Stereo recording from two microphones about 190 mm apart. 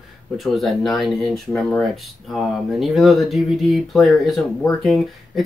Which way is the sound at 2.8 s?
Centre (ahead or behind).